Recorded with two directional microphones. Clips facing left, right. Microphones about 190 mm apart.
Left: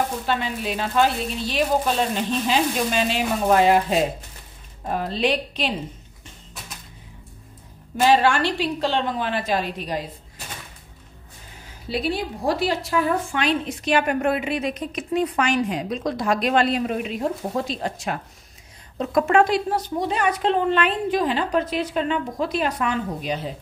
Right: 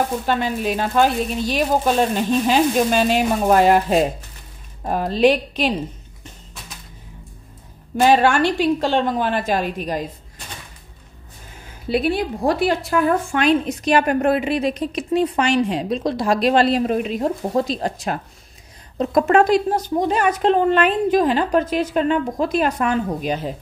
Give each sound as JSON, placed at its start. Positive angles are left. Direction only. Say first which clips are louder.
{"t": 0.3, "sound": "speech", "louder": "right 4 dB", "side_deg": -45}
{"t": 8.0, "sound": "speech", "louder": "right 3 dB", "side_deg": -50}
{"t": 11.9, "sound": "a woman's voice", "louder": "right 5 dB", "side_deg": -55}